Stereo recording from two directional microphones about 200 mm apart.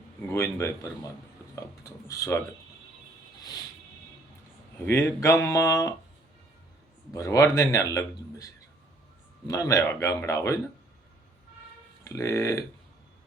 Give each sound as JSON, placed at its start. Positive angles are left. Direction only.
{"t": 0.3, "sound": "speech", "side_deg": 15}
{"t": 4.9, "sound": "speech", "side_deg": 15}
{"t": 7.1, "sound": "speech", "side_deg": 15}
{"t": 9.5, "sound": "speech", "side_deg": 15}
{"t": 12.0, "sound": "speech", "side_deg": 15}